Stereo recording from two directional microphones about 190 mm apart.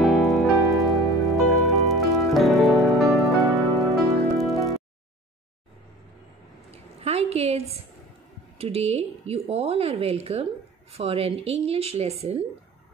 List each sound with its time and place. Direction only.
0.0 s music: centre (ahead or behind)
3.4 s music: 15° right (ahead or behind)
4.1 s music: centre (ahead or behind)
6.7 s a sound: 30° right (ahead or behind)
8.5 s speech: 30° right (ahead or behind)